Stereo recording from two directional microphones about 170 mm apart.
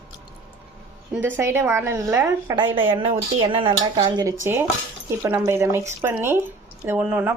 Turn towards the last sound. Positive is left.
turn(degrees=-10)  # may be behind; listen again after turning